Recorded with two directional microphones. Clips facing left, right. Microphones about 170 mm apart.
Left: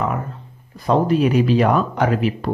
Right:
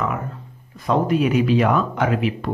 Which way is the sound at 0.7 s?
35° left (ahead or behind).